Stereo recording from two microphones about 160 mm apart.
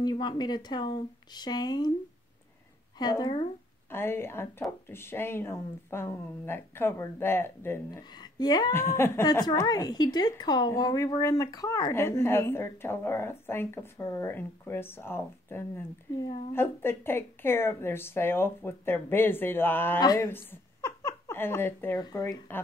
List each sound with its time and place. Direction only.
0.0 s speech: 25° left (ahead or behind)
3.0 s a woman's voice: 25° left (ahead or behind)
8.2 s speech: 25° left (ahead or behind)
8.7 s a woman's voice: 15° left (ahead or behind)